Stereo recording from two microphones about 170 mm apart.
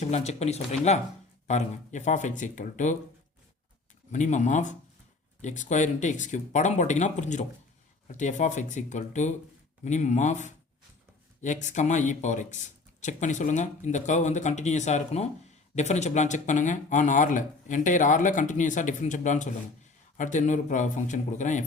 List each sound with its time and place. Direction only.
0.0 s speech: 40° left (ahead or behind)
4.1 s speech: 45° left (ahead or behind)